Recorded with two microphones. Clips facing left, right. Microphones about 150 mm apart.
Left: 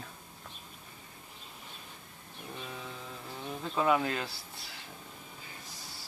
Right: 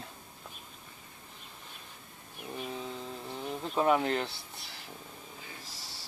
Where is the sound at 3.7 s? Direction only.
30° right (ahead or behind).